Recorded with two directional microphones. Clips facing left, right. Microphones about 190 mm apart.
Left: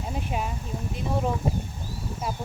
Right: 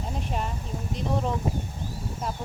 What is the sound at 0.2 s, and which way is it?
Speech, 5° left (ahead or behind).